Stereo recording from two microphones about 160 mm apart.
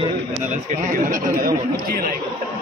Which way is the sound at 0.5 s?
50° right (ahead or behind).